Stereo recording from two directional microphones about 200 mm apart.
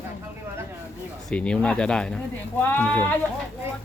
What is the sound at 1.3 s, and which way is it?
Speech, 5° left (ahead or behind).